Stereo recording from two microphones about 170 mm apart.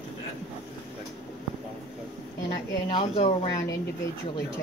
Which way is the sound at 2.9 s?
35° left (ahead or behind).